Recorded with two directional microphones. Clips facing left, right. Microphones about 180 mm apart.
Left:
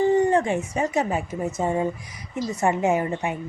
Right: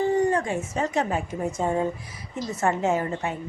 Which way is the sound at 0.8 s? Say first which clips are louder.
Even; 10° left (ahead or behind).